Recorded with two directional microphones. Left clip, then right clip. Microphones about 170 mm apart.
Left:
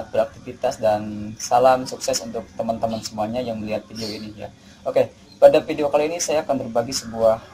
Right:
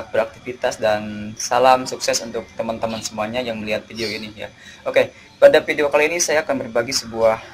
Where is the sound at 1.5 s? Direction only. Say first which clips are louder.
Right 1 dB; 30° right (ahead or behind).